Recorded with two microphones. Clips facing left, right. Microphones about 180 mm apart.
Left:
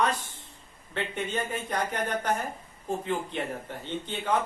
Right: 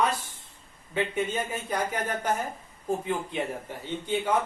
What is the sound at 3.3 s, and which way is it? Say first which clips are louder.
Speech: right 1 dB; 10° right (ahead or behind).